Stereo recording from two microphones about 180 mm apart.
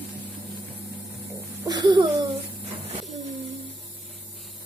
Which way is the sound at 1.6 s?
25° right (ahead or behind).